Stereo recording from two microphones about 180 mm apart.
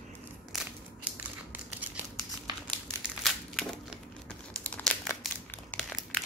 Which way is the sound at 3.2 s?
Centre (ahead or behind).